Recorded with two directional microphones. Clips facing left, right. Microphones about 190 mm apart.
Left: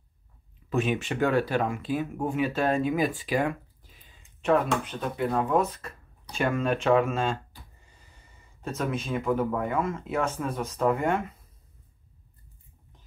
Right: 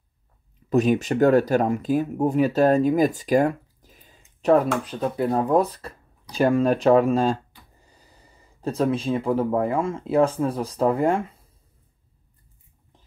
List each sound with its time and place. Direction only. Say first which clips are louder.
0.7 s speech: right 7 dB; 40° right (ahead or behind)